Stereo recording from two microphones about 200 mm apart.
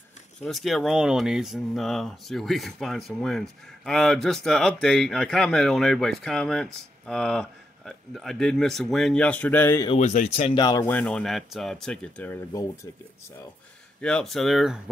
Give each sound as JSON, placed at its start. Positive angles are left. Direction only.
{"t": 0.4, "sound": "speech", "side_deg": 0}
{"t": 9.8, "sound": "speech", "side_deg": 35}
{"t": 10.6, "sound": "speech", "side_deg": 15}
{"t": 14.0, "sound": "speech", "side_deg": 5}